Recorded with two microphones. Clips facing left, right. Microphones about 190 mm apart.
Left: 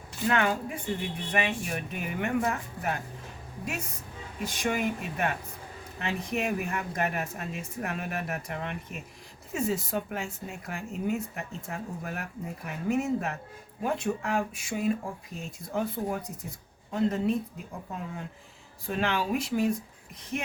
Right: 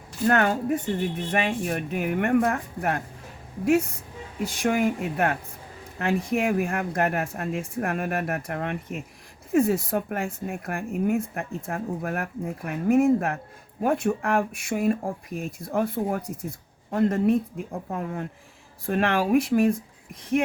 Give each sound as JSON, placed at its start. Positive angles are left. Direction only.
{"t": 0.3, "sound": "speech", "side_deg": -45}
{"t": 4.6, "sound": "speech", "side_deg": -55}